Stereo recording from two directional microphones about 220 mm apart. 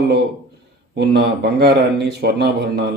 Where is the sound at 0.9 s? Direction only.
50° right (ahead or behind).